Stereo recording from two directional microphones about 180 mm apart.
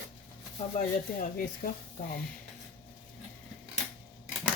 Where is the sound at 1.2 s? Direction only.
50° left (ahead or behind).